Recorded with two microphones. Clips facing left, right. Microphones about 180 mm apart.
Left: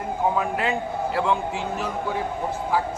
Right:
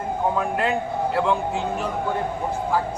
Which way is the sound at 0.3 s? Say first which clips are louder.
Right 1 dB; centre (ahead or behind).